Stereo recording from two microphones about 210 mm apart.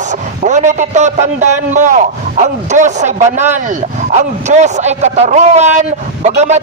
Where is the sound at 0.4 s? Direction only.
35° right (ahead or behind).